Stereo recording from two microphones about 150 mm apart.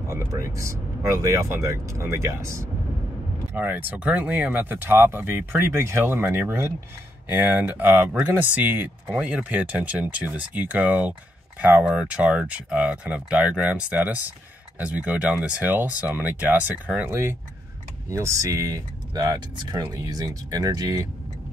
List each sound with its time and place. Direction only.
0.1 s speech: 20° right (ahead or behind)